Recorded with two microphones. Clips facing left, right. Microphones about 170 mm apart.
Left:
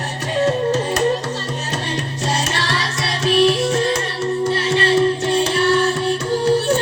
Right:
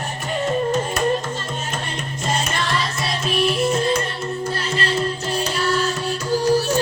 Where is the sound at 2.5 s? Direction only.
75° left (ahead or behind).